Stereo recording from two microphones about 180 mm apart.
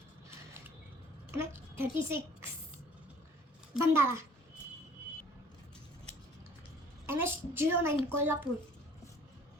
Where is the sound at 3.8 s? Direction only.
15° right (ahead or behind).